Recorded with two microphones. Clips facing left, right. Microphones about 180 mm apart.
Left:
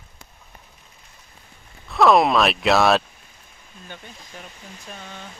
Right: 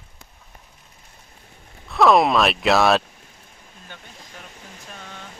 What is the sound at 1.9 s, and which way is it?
Speech, centre (ahead or behind).